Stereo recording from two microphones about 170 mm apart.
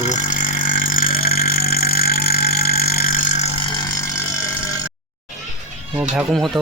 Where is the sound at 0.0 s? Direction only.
50° left (ahead or behind).